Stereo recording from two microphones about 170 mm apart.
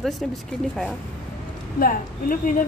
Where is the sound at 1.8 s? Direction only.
55° left (ahead or behind).